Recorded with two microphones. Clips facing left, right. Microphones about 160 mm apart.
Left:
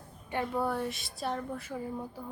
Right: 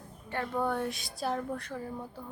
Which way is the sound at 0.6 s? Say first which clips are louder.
Right 1 dB; centre (ahead or behind).